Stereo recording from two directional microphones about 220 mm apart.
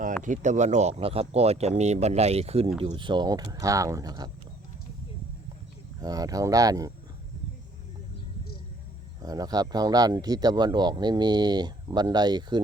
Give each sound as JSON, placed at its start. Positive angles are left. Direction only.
{"t": 0.2, "sound": "speech", "side_deg": -35}
{"t": 6.0, "sound": "speech", "side_deg": -15}
{"t": 9.2, "sound": "speech", "side_deg": -15}